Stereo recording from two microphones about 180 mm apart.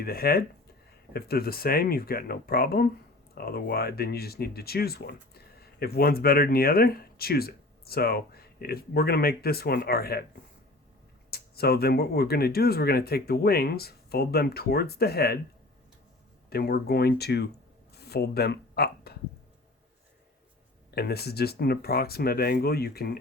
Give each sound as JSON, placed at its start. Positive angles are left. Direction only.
{"t": 0.0, "sound": "speech", "side_deg": 55}
{"t": 11.3, "sound": "speech", "side_deg": 60}
{"t": 16.5, "sound": "speech", "side_deg": 60}
{"t": 17.9, "sound": "a sound", "side_deg": 65}
{"t": 20.9, "sound": "speech", "side_deg": 60}